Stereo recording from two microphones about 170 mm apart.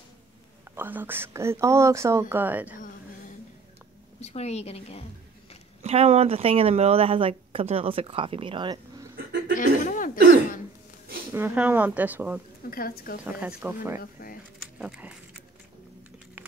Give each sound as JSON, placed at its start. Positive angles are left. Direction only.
{"t": 0.7, "sound": "speech", "side_deg": -10}
{"t": 4.2, "sound": "a woman's voice", "side_deg": 40}
{"t": 5.8, "sound": "speech", "side_deg": -35}
{"t": 9.6, "sound": "a sound", "side_deg": 50}
{"t": 11.3, "sound": "speech", "side_deg": -10}
{"t": 12.6, "sound": "a woman's voice", "side_deg": 60}
{"t": 13.2, "sound": "speech", "side_deg": -5}
{"t": 14.6, "sound": "a sound", "side_deg": -5}